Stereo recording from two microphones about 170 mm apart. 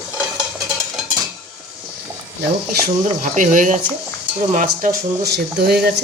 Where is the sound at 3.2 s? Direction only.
50° right (ahead or behind).